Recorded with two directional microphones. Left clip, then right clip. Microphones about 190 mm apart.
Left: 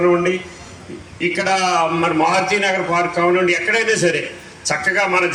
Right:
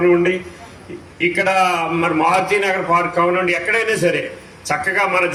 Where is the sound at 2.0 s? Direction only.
25° right (ahead or behind).